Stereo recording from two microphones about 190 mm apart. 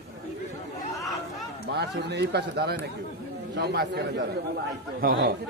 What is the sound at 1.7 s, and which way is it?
Speech, 60° right (ahead or behind).